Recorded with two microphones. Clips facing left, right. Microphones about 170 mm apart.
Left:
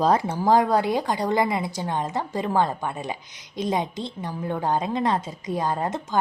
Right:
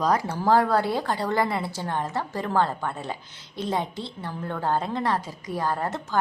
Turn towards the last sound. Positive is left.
turn(degrees=20)  # may be behind; listen again after turning